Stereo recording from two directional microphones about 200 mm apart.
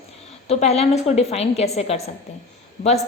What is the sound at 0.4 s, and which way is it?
A woman's voice, 30° left (ahead or behind).